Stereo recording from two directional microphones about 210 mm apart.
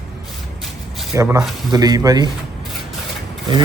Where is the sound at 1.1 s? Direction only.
15° right (ahead or behind).